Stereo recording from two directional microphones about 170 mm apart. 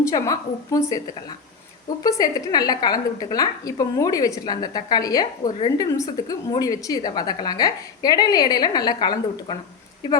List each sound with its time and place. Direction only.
0.1 s a woman's voice: 20° left (ahead or behind)
2.0 s a woman's voice: 20° left (ahead or behind)